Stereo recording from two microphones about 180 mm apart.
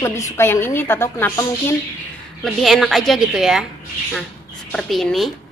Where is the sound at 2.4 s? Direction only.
Centre (ahead or behind).